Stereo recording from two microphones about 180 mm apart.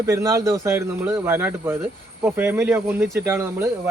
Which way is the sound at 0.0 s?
15° right (ahead or behind).